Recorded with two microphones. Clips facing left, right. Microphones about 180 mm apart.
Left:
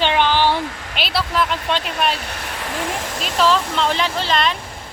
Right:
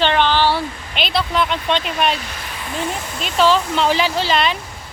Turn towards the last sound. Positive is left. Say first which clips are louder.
# right 2 dB
turn(degrees=-5)  # may be behind; listen again after turning